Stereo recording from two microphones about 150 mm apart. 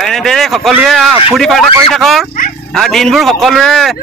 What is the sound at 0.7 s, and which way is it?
A man's voice, centre (ahead or behind).